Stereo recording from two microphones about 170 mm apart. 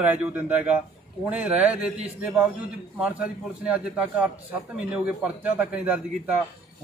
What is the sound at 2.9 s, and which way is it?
A man's voice, 5° right (ahead or behind).